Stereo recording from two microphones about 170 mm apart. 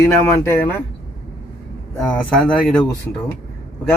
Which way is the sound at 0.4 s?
10° left (ahead or behind).